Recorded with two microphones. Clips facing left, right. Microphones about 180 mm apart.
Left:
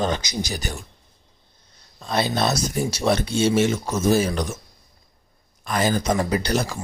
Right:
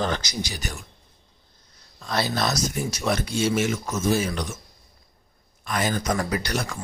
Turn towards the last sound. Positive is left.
turn(degrees=30)  # may be behind; listen again after turning